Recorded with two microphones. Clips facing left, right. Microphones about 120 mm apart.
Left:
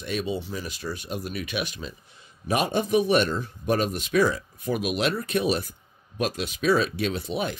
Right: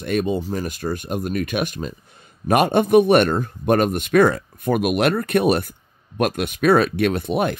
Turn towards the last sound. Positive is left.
turn(degrees=-55)  # may be behind; listen again after turning